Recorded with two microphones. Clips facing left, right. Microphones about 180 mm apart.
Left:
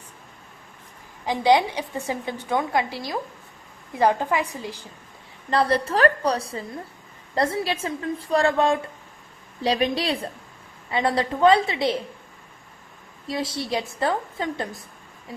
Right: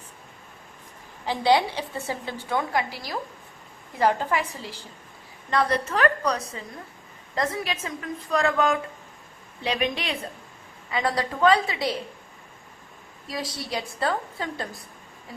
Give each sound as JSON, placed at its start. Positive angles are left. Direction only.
{"t": 1.2, "sound": "a woman's voice", "side_deg": 15}
{"t": 5.5, "sound": "a woman's voice", "side_deg": 30}
{"t": 13.2, "sound": "a woman's voice", "side_deg": 25}